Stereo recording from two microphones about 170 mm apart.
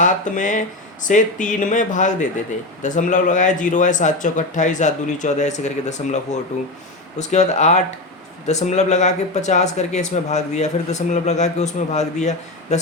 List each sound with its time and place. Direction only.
0.0 s speech: 50° left (ahead or behind)
7.2 s speech: 40° left (ahead or behind)